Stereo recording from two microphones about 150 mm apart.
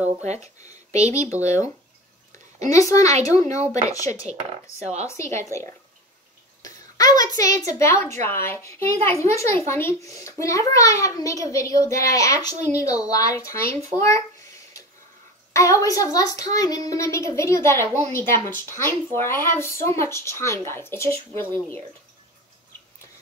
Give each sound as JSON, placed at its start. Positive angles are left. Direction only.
{"t": 0.0, "sound": "speech", "side_deg": -50}
{"t": 2.7, "sound": "a child's voice", "side_deg": 20}
{"t": 4.7, "sound": "speech", "side_deg": -45}
{"t": 5.0, "sound": "a child's voice", "side_deg": 20}
{"t": 8.9, "sound": "speech", "side_deg": -45}
{"t": 9.3, "sound": "a child's voice", "side_deg": 20}
{"t": 14.0, "sound": "a sound", "side_deg": 20}
{"t": 15.5, "sound": "a child's voice", "side_deg": 20}